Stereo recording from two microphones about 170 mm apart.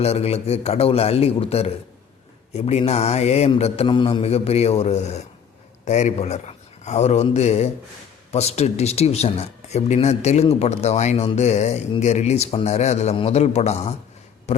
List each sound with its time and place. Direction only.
0.0 s a man's voice: 40° left (ahead or behind)